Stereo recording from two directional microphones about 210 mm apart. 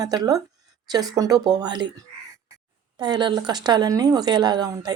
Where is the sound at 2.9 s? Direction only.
20° right (ahead or behind).